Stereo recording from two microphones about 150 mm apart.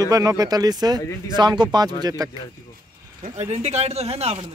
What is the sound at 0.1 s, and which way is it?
Speech, 25° right (ahead or behind).